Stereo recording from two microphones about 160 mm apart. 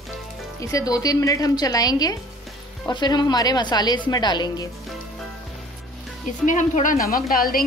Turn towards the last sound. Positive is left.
turn(degrees=65)  # may be behind; listen again after turning